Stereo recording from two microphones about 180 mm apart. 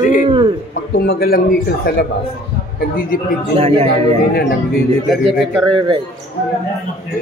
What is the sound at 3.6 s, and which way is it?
Speech, 35° right (ahead or behind).